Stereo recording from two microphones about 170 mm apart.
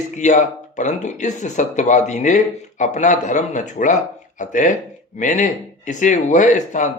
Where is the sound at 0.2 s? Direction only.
45° left (ahead or behind).